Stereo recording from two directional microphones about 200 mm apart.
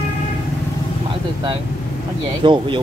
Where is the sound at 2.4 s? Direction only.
25° right (ahead or behind).